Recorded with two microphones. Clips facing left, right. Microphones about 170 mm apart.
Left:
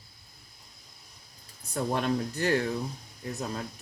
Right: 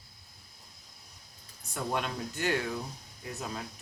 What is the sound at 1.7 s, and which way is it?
Speech, 35° left (ahead or behind).